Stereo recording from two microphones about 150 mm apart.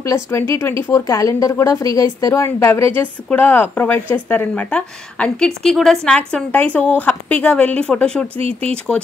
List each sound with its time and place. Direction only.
0.0 s a woman's voice: 20° left (ahead or behind)
8.4 s speech: 40° right (ahead or behind)